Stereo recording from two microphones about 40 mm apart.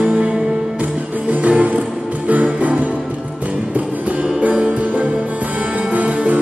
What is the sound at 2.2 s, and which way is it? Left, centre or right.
Music, right.